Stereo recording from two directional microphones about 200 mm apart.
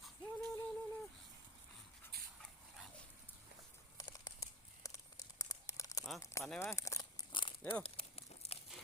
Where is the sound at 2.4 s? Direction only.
Centre (ahead or behind).